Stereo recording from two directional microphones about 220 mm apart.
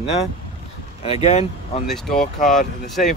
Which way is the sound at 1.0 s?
30° left (ahead or behind).